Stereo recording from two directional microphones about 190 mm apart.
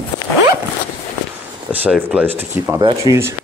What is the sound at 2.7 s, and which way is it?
Speech, 20° right (ahead or behind).